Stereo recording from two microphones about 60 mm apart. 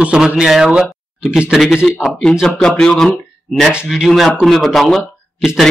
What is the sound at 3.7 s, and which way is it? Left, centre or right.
A man's voice, centre.